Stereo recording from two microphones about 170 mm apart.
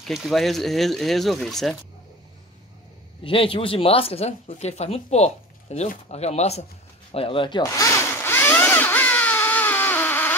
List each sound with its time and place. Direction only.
0.0 s speech: centre (ahead or behind)
3.3 s speech: 30° left (ahead or behind)
7.1 s a sound: 30° left (ahead or behind); by 10.3 s 10° left (ahead or behind)